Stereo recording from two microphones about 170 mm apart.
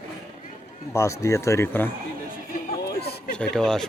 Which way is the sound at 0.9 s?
15° left (ahead or behind).